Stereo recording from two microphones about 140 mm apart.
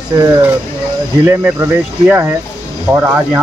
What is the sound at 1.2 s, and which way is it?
Speech, 15° right (ahead or behind).